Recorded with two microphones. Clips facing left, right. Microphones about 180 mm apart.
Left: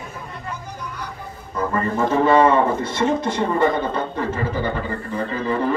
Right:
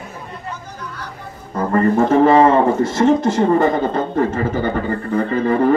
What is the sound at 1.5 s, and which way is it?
Music, 50° right (ahead or behind).